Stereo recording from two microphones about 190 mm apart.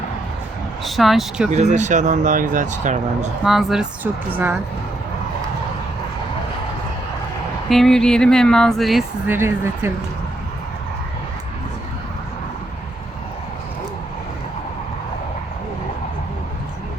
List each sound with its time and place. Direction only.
0.9 s speech: centre (ahead or behind)
1.5 s speech: 40° right (ahead or behind)
3.4 s speech: centre (ahead or behind)
7.7 s speech: centre (ahead or behind)
9.2 s speech: 10° right (ahead or behind)